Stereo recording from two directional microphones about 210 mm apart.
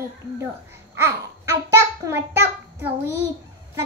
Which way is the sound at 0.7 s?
10° right (ahead or behind).